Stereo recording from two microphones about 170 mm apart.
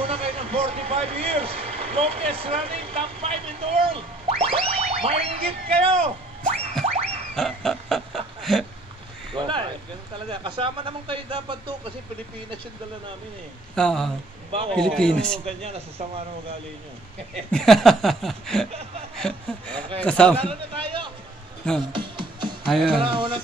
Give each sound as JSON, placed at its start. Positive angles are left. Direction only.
{"t": 0.0, "sound": "speech", "side_deg": -35}
{"t": 6.8, "sound": "music", "side_deg": -35}
{"t": 7.3, "sound": "a sound", "side_deg": 0}
{"t": 9.3, "sound": "a sound", "side_deg": -30}
{"t": 10.3, "sound": "speech", "side_deg": -30}
{"t": 13.7, "sound": "speech", "side_deg": 5}
{"t": 14.5, "sound": "speech", "side_deg": -35}
{"t": 14.8, "sound": "speech", "side_deg": 5}
{"t": 15.4, "sound": "speech", "side_deg": -35}
{"t": 17.5, "sound": "a man's voice", "side_deg": 5}
{"t": 20.3, "sound": "a man's voice", "side_deg": -30}
{"t": 21.9, "sound": "music", "side_deg": -30}
{"t": 22.7, "sound": "speech", "side_deg": 0}
{"t": 22.9, "sound": "music", "side_deg": -30}